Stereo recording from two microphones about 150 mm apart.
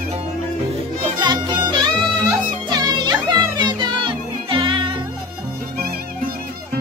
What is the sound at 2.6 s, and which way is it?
Music, 30° right (ahead or behind).